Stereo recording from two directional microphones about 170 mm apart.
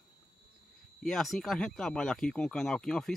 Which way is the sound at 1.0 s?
Centre (ahead or behind).